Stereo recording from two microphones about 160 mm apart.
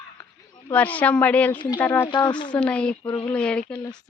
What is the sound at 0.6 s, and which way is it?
A woman's voice, 10° left (ahead or behind).